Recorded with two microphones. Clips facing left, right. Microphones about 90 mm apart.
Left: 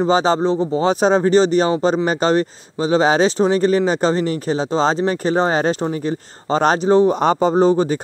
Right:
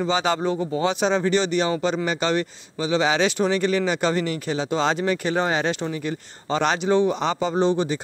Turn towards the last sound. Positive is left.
turn(degrees=40)  # may be behind; listen again after turning